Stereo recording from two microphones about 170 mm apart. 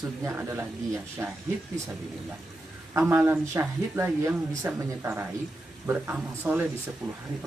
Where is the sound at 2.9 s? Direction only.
15° right (ahead or behind).